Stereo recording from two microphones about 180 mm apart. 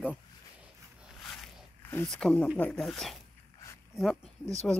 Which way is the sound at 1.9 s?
5° left (ahead or behind).